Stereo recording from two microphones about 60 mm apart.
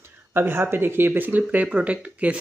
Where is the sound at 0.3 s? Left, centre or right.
Right.